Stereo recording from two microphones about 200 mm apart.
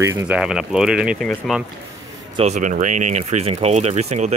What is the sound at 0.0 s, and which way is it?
Speech, 15° right (ahead or behind).